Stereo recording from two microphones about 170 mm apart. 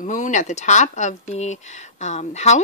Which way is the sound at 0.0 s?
45° left (ahead or behind).